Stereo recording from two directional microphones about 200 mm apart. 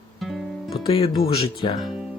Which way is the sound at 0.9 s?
20° left (ahead or behind).